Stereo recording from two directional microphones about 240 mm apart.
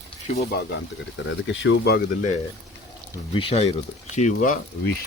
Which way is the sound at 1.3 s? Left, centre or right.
Left.